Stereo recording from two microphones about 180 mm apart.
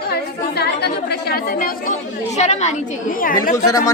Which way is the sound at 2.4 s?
40° left (ahead or behind).